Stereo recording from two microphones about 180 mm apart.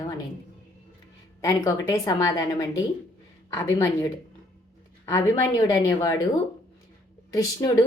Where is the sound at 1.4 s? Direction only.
20° left (ahead or behind).